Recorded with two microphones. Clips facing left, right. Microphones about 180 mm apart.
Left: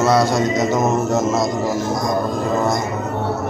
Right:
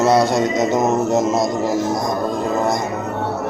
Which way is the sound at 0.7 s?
15° right (ahead or behind).